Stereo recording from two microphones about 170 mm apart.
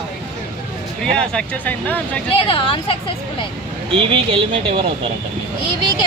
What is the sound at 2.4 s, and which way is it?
Speech, 30° left (ahead or behind).